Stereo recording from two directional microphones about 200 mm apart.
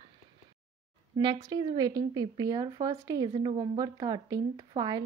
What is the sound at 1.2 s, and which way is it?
A woman's voice, 20° right (ahead or behind).